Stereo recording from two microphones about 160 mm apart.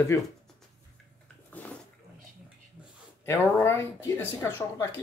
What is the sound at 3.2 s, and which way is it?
Speech, 15° left (ahead or behind).